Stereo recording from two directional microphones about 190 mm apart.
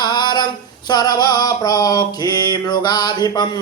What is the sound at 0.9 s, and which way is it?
Mantra, 20° left (ahead or behind).